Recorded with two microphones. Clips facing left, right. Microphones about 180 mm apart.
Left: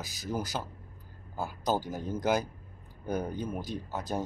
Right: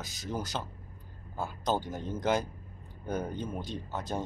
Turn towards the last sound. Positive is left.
turn(degrees=10)  # may be behind; listen again after turning